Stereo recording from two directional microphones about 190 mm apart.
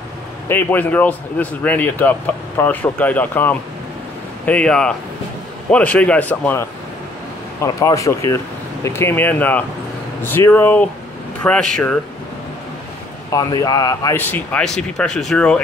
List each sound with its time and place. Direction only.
0.5 s speech: 10° left (ahead or behind)
13.3 s speech: 20° left (ahead or behind)